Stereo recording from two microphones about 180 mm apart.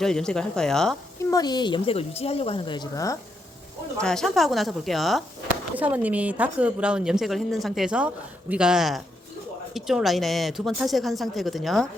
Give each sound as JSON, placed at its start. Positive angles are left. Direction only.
{"t": 0.0, "sound": "a woman's voice", "side_deg": 5}
{"t": 1.3, "sound": "a woman's voice", "side_deg": 20}
{"t": 4.0, "sound": "a woman's voice", "side_deg": 5}